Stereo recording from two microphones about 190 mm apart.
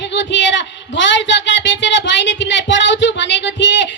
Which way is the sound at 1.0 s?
70° left (ahead or behind).